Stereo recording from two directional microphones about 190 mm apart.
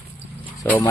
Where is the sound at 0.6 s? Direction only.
15° left (ahead or behind).